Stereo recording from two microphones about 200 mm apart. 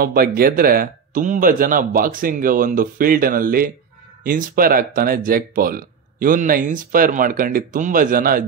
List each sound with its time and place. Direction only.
0.0 s speech: 50° right (ahead or behind)